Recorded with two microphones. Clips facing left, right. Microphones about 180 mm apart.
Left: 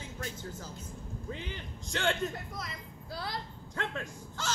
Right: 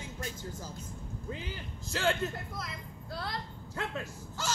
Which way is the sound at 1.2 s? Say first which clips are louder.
Right 1 dB; 5° right (ahead or behind).